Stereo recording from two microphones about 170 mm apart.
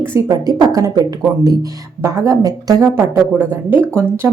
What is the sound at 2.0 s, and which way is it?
Speech, 20° right (ahead or behind).